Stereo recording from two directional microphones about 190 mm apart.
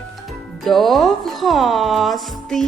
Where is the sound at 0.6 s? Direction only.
Centre (ahead or behind).